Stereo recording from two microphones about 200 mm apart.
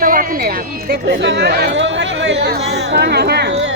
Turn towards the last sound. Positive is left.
turn(degrees=-55)  # may be behind; listen again after turning